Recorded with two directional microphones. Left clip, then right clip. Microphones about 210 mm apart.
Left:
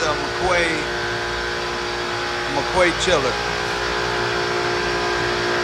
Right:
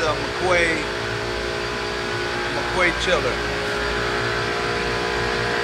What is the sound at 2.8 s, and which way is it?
Speech, 20° left (ahead or behind).